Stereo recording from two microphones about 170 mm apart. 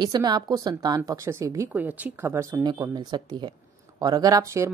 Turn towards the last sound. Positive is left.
turn(degrees=-15)  # may be behind; listen again after turning